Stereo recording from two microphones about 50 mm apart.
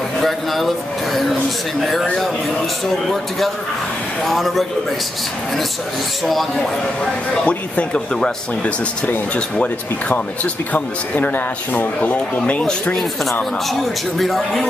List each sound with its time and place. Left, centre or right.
0.2 s speech: centre
3.1 s speech: centre
6.2 s speech: centre
7.4 s speech: left
14.1 s speech: centre